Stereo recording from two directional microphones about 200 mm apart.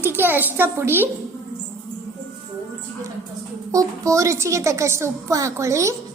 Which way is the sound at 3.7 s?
15° right (ahead or behind).